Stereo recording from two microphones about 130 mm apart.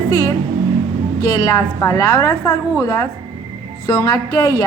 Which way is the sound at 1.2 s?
25° left (ahead or behind).